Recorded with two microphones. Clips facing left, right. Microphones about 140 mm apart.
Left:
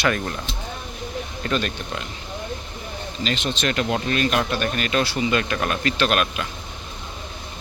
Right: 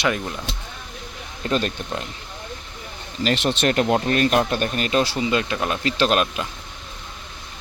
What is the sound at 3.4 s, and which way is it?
Speech, 65° right (ahead or behind).